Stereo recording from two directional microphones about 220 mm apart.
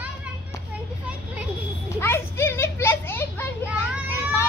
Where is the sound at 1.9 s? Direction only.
10° left (ahead or behind).